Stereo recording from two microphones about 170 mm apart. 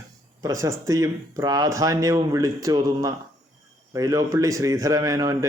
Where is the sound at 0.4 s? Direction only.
20° right (ahead or behind).